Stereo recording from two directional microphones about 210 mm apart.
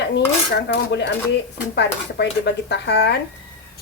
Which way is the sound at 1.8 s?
55° left (ahead or behind).